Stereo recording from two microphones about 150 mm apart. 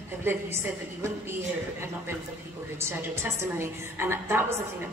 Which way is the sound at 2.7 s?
15° right (ahead or behind).